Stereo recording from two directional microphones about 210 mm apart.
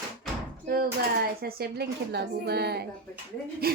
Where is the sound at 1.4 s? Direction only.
50° right (ahead or behind).